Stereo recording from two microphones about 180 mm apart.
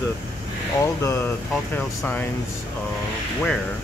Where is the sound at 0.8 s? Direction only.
15° left (ahead or behind).